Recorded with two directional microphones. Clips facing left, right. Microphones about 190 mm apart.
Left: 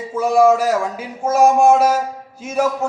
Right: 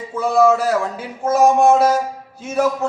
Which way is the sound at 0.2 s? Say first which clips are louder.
Left 1 dB; 10° left (ahead or behind).